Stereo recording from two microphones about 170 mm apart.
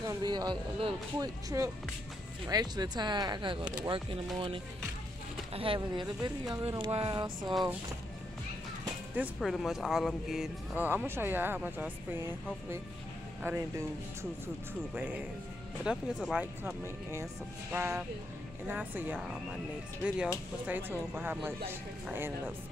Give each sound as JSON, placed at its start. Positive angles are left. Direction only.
{"t": 0.0, "sound": "speech", "side_deg": -25}
{"t": 2.4, "sound": "speech", "side_deg": -25}
{"t": 9.1, "sound": "speech", "side_deg": -5}
{"t": 15.8, "sound": "speech", "side_deg": -5}